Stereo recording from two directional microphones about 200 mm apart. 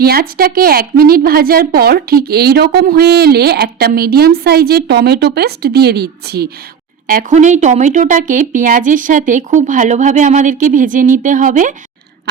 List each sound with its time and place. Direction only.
0.0 s a woman's voice: 50° right (ahead or behind)
7.1 s speech: 40° right (ahead or behind)